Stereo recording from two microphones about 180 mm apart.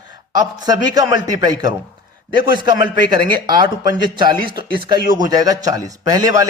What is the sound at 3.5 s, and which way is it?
A man's voice, 25° right (ahead or behind).